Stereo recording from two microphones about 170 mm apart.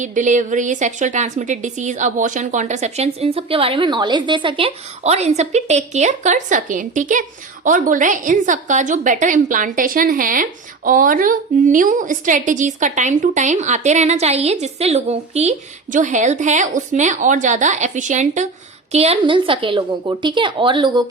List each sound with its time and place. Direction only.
0.0 s a woman's voice: 45° right (ahead or behind); by 21.0 s 25° right (ahead or behind)